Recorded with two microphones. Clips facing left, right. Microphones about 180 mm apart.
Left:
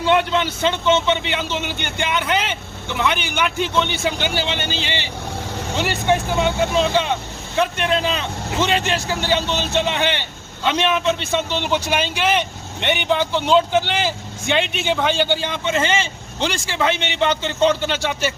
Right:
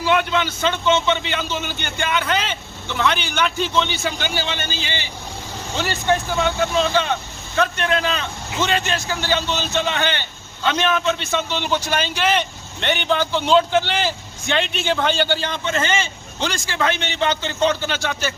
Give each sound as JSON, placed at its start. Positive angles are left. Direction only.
{"t": 0.0, "sound": "a man's voice", "side_deg": 20}
{"t": 4.0, "sound": "a man's voice", "side_deg": 25}